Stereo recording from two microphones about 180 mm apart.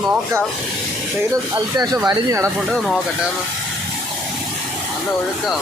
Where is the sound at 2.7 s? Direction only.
Centre (ahead or behind).